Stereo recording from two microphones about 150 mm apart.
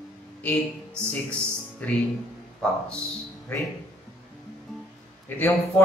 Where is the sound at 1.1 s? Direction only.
10° left (ahead or behind).